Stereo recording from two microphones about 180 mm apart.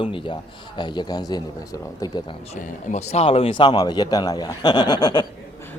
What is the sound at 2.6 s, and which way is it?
A man's voice, 40° left (ahead or behind).